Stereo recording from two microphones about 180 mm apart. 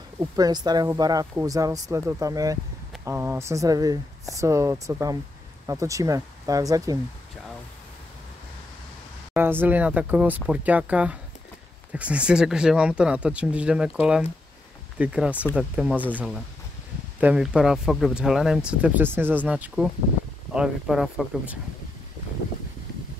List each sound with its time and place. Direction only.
0.2 s speech: 20° right (ahead or behind)
9.3 s speech: 10° right (ahead or behind)
17.2 s speech: 5° right (ahead or behind)